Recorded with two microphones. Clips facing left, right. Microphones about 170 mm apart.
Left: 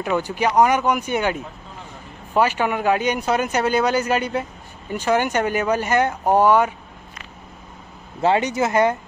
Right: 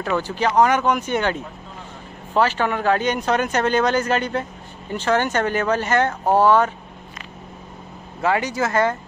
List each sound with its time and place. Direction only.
0.0 s speech: 15° left (ahead or behind)
8.2 s speech: 25° left (ahead or behind)